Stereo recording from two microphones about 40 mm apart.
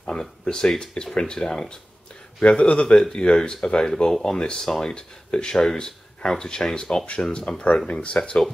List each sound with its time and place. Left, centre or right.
0.5 s speech: centre
4.4 s speech: left
7.7 s speech: left